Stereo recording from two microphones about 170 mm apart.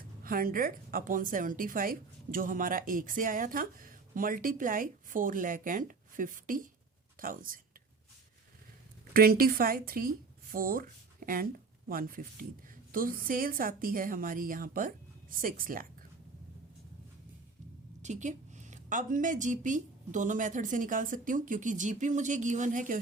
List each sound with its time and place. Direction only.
0.2 s a woman's voice: 55° right (ahead or behind)
9.1 s speech: 60° right (ahead or behind)
18.0 s a woman's voice: 45° right (ahead or behind)